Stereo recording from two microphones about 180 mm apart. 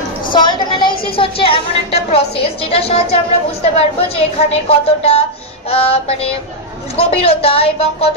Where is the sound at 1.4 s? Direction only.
30° left (ahead or behind).